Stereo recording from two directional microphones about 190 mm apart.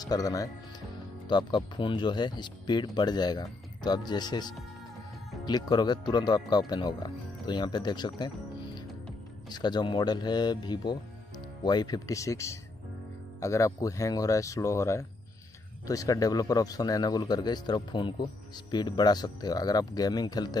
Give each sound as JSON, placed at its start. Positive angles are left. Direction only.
{"t": 0.0, "sound": "speech", "side_deg": 20}
{"t": 9.5, "sound": "speech", "side_deg": 20}